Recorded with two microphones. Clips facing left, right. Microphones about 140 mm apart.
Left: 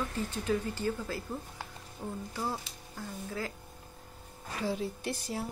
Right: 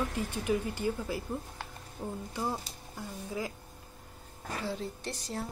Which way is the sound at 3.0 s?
15° right (ahead or behind).